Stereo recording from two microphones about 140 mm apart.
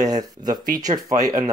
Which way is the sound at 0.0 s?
30° right (ahead or behind).